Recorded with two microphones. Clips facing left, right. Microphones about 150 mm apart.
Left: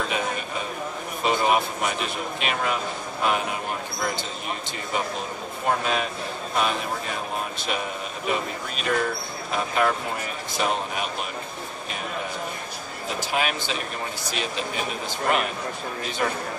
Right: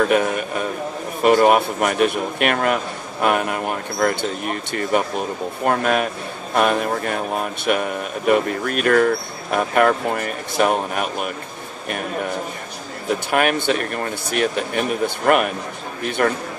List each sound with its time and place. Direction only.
0.1 s a man's voice: 55° right (ahead or behind)
13.3 s a man's voice: 60° right (ahead or behind)